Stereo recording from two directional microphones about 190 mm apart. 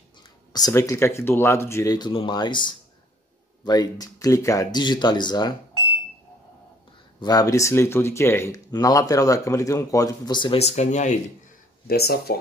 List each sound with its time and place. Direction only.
0.5 s speech: 20° left (ahead or behind)
7.2 s speech: 20° left (ahead or behind); by 11.1 s 40° left (ahead or behind)
11.9 s speech: 55° left (ahead or behind)